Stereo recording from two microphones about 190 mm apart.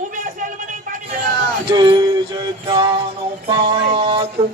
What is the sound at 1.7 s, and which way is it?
Music, 25° right (ahead or behind).